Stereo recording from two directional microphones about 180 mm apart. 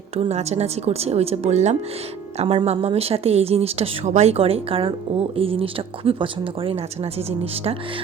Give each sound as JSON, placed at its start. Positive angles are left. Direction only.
{"t": 0.2, "sound": "a woman's voice", "side_deg": -35}